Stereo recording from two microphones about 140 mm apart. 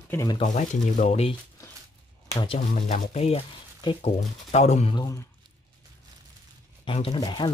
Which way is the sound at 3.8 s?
45° left (ahead or behind).